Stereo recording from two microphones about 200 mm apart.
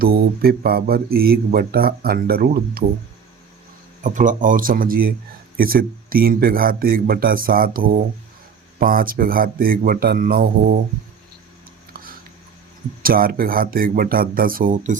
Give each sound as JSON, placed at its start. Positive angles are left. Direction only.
{"t": 0.0, "sound": "speech", "side_deg": -50}
{"t": 4.0, "sound": "speech", "side_deg": -40}
{"t": 13.0, "sound": "speech", "side_deg": -45}